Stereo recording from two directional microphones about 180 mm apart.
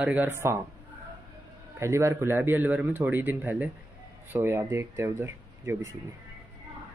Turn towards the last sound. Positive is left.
turn(degrees=-15)  # may be behind; listen again after turning